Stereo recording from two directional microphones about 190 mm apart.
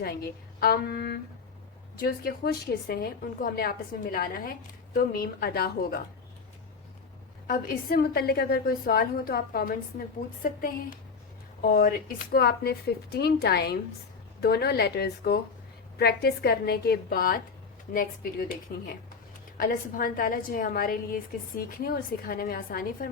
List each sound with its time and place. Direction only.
0.0 s a woman's voice: 55° left (ahead or behind)
7.4 s a woman's voice: 50° left (ahead or behind)